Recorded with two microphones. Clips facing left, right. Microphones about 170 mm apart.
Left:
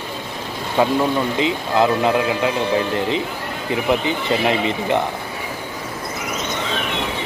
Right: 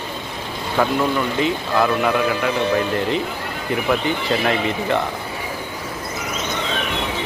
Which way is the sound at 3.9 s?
20° left (ahead or behind).